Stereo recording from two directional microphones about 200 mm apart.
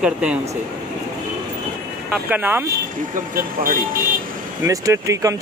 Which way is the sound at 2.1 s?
10° right (ahead or behind).